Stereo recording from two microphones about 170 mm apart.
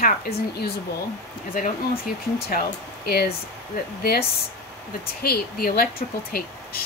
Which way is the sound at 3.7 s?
65° left (ahead or behind).